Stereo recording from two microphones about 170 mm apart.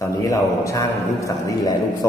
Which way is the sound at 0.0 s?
20° left (ahead or behind).